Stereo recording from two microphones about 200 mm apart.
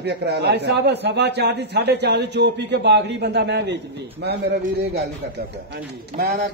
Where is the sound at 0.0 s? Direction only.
55° right (ahead or behind).